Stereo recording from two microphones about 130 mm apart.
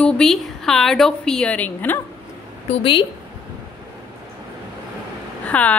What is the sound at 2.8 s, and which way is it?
Speech, 40° left (ahead or behind).